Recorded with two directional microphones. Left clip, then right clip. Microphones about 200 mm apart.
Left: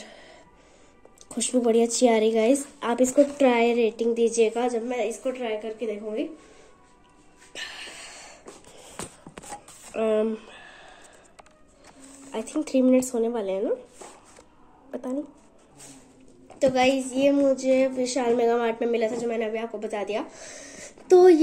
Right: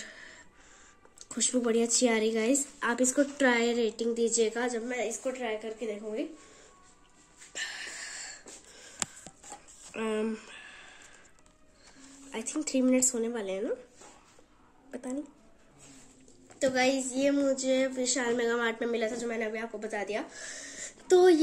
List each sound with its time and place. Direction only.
0.0 s throat clearing: 20° right (ahead or behind)
1.3 s a woman's voice: 15° right (ahead or behind)
7.5 s wheeze: 10° right (ahead or behind)
9.9 s a sound: 25° right (ahead or behind)
12.3 s a woman's voice: 20° right (ahead or behind)
16.5 s a woman's voice: 15° right (ahead or behind)